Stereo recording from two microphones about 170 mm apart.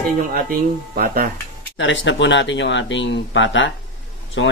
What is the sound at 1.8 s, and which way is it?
Speech, 90° left.